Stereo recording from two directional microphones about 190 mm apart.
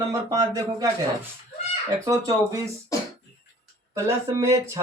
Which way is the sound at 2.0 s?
15° right (ahead or behind).